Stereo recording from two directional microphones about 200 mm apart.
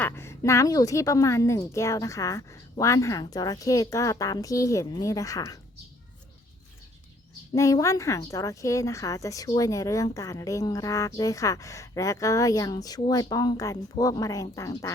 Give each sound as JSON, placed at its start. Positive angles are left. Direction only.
{"t": 0.0, "sound": "a woman's voice", "side_deg": 15}
{"t": 7.5, "sound": "a woman's voice", "side_deg": 15}